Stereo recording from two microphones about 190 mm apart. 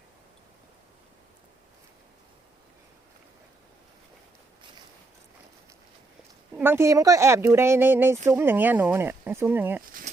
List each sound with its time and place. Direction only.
6.6 s speech: 10° right (ahead or behind)
9.8 s speech: 45° right (ahead or behind)